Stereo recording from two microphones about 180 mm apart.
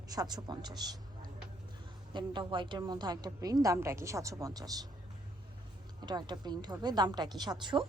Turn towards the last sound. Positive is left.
turn(degrees=-25)  # may be behind; listen again after turning